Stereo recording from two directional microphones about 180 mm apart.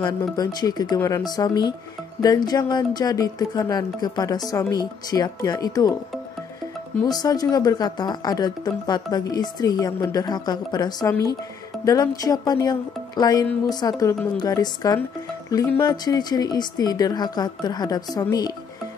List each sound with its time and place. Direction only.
0.0 s speech: 25° left (ahead or behind)
7.1 s speech: 20° left (ahead or behind)